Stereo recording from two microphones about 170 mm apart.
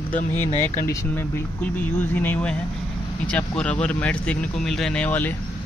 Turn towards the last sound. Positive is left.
turn(degrees=10)  # may be behind; listen again after turning